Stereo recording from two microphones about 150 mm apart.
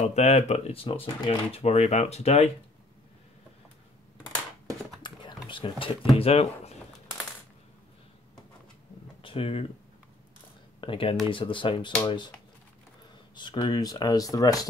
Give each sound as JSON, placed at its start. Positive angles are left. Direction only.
{"t": 0.0, "sound": "speech", "side_deg": 45}
{"t": 5.0, "sound": "speech", "side_deg": 30}
{"t": 9.2, "sound": "speech", "side_deg": 35}
{"t": 10.8, "sound": "speech", "side_deg": 35}
{"t": 13.3, "sound": "speech", "side_deg": 30}